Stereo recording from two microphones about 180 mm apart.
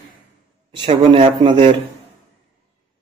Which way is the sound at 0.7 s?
30° right (ahead or behind).